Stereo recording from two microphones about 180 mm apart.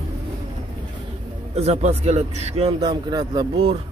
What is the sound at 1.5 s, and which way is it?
A man's voice, 35° right (ahead or behind).